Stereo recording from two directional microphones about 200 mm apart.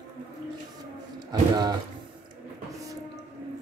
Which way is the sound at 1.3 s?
20° right (ahead or behind).